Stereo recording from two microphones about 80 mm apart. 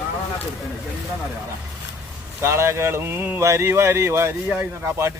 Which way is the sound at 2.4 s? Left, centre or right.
Right.